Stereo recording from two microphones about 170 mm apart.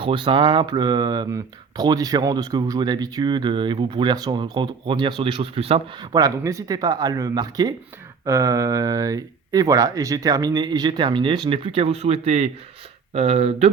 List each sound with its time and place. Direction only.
0.0 s speech: 30° right (ahead or behind)
6.1 s speech: 20° right (ahead or behind); by 13.7 s 35° right (ahead or behind)